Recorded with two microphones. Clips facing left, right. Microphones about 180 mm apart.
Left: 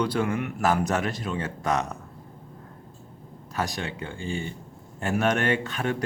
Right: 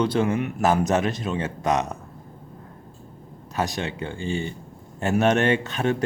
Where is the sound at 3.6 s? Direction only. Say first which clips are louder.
Right 3 dB; 20° right (ahead or behind).